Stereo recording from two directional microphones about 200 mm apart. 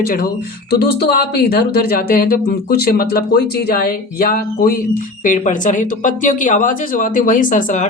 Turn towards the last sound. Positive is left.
turn(degrees=40)  # may be behind; listen again after turning